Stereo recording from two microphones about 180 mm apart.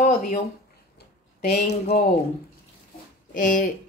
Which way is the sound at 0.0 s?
45° left (ahead or behind).